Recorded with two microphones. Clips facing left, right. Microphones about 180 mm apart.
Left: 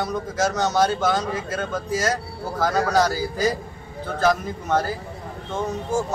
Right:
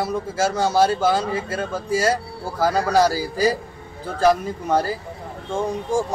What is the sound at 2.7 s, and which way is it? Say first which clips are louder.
Speech: right 2 dB; 30° right (ahead or behind).